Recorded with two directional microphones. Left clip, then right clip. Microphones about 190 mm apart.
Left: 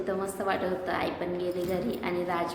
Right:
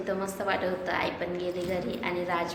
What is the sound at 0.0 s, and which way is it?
A woman's voice, 5° left (ahead or behind).